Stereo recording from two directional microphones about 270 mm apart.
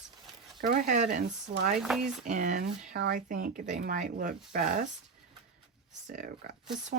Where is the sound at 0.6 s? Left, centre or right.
Right.